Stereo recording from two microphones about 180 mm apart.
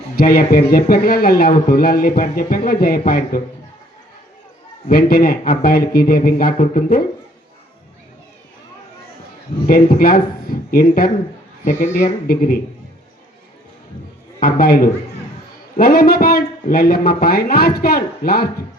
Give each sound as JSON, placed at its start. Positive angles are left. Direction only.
{"t": 0.2, "sound": "speech", "side_deg": 55}
{"t": 4.9, "sound": "speech", "side_deg": 55}
{"t": 9.6, "sound": "speech", "side_deg": 55}
{"t": 14.3, "sound": "speech", "side_deg": 55}